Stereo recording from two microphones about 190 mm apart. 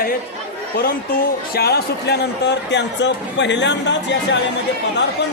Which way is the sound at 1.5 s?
60° left (ahead or behind).